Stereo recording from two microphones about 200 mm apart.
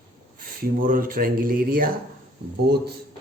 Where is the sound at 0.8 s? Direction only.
45° right (ahead or behind).